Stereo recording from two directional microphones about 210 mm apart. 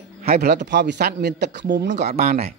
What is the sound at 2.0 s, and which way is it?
Speech, 30° right (ahead or behind).